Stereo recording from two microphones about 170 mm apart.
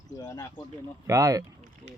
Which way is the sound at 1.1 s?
20° right (ahead or behind).